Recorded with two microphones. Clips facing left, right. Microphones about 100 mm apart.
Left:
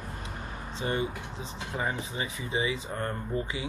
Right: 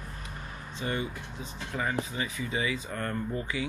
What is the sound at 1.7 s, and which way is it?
Speech, 20° left (ahead or behind).